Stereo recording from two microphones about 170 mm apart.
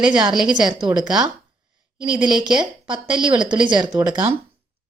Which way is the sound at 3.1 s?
5° right (ahead or behind).